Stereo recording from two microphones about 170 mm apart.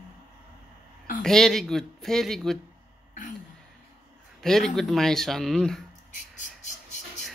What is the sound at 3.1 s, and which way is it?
Throat clearing, 50° left (ahead or behind).